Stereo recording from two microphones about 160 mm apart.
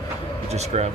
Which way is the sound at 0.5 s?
45° right (ahead or behind).